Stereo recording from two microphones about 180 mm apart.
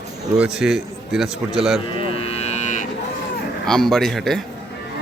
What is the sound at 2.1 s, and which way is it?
Cattle, 35° left (ahead or behind).